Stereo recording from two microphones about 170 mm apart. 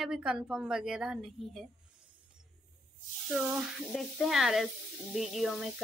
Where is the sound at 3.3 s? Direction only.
5° right (ahead or behind).